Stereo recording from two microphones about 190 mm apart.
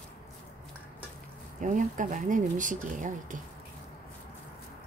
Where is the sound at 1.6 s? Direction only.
40° right (ahead or behind).